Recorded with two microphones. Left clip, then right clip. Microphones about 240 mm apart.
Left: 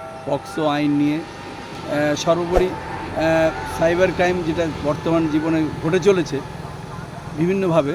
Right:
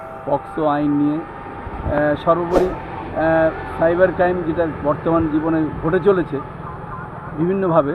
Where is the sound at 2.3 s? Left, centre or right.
Left.